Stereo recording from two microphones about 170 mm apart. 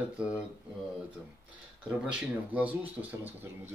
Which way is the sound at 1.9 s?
5° right (ahead or behind).